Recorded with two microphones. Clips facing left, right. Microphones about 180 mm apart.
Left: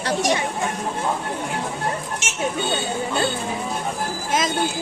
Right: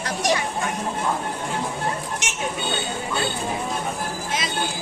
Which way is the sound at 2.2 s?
15° right (ahead or behind).